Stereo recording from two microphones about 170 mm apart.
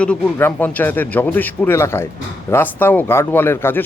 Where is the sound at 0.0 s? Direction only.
10° left (ahead or behind).